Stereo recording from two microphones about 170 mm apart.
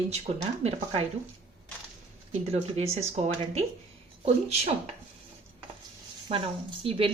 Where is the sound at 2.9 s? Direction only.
40° right (ahead or behind).